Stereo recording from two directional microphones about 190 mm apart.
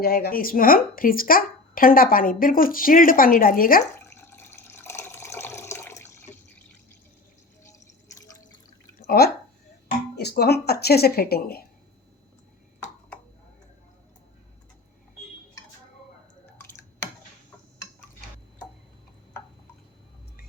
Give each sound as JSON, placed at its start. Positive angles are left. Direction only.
{"t": 0.0, "sound": "speech", "side_deg": 55}
{"t": 3.9, "sound": "water", "side_deg": 15}
{"t": 7.6, "sound": "drip", "side_deg": 15}
{"t": 9.0, "sound": "drip", "side_deg": 50}
{"t": 10.2, "sound": "speech", "side_deg": 55}